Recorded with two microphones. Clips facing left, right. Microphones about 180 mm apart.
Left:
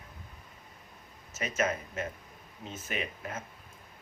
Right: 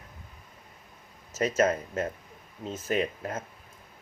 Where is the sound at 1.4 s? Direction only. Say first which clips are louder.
Right 7 dB; 40° right (ahead or behind).